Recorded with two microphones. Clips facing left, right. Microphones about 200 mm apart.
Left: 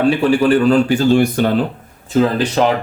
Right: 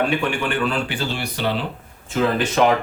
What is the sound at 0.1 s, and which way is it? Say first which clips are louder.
Speech: left 10 dB; 35° left (ahead or behind).